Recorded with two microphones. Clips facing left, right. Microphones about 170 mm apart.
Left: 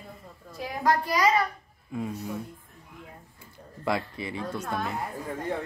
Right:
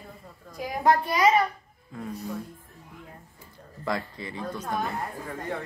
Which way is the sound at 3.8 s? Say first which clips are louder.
Left 2 dB; 15° left (ahead or behind).